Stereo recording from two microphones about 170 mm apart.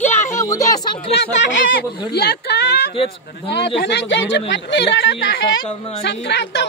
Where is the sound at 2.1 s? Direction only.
70° left (ahead or behind).